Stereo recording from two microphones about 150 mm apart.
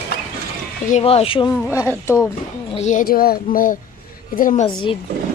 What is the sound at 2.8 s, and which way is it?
Speech, 60° left (ahead or behind).